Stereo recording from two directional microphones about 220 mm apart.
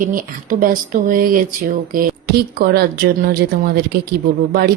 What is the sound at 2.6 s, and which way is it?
A woman's voice, 45° right (ahead or behind).